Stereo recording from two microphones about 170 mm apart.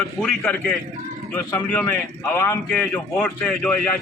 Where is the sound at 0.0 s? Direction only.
5° left (ahead or behind).